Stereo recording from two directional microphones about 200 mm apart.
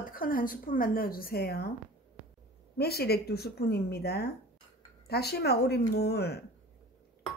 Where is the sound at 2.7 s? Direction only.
50° left (ahead or behind).